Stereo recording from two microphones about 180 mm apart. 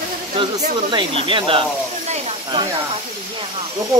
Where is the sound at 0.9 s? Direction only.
25° right (ahead or behind).